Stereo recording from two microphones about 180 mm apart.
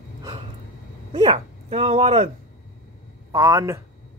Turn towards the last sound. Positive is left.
turn(degrees=-20)  # may be behind; listen again after turning